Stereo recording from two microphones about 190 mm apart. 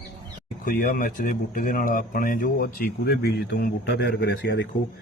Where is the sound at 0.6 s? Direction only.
45° left (ahead or behind); by 4.7 s 65° left (ahead or behind).